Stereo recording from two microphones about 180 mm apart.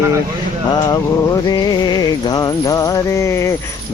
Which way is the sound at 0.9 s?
25° left (ahead or behind).